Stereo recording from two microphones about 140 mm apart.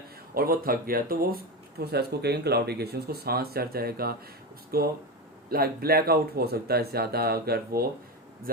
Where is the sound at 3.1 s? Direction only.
90° right.